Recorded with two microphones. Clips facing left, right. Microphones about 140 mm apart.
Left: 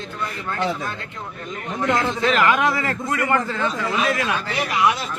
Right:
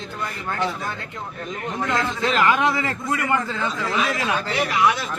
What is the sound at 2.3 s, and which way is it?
A man's voice, 25° right (ahead or behind).